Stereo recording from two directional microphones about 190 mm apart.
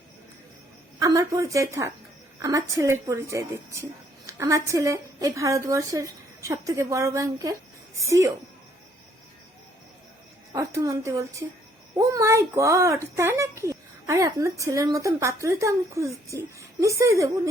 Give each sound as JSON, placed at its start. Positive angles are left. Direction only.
{"t": 0.9, "sound": "a woman's voice", "side_deg": -20}
{"t": 10.5, "sound": "a woman's voice", "side_deg": -15}